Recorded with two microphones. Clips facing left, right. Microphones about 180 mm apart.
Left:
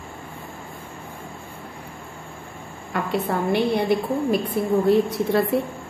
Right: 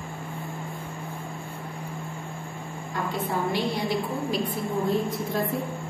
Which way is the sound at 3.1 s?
60° left (ahead or behind).